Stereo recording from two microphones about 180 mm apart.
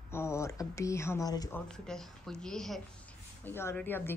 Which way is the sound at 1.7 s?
Centre (ahead or behind).